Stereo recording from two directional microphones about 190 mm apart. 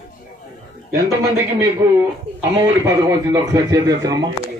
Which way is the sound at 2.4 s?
15° right (ahead or behind).